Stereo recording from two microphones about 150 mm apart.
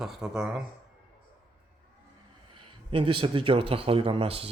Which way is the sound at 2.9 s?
35° right (ahead or behind).